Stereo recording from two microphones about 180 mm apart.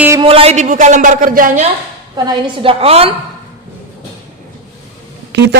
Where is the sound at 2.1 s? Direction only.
25° right (ahead or behind).